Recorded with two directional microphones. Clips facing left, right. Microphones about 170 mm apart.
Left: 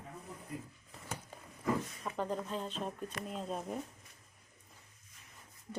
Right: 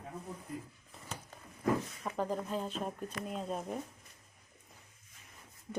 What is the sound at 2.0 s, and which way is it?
Speech, 5° right (ahead or behind).